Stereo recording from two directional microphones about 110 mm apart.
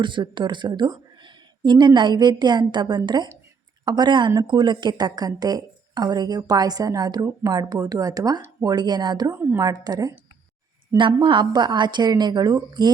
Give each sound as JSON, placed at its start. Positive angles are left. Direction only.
{"t": 0.0, "sound": "a woman's voice", "side_deg": -45}
{"t": 9.3, "sound": "a woman's voice", "side_deg": -20}
{"t": 9.6, "sound": "a woman's voice", "side_deg": -35}
{"t": 10.9, "sound": "a woman's voice", "side_deg": -45}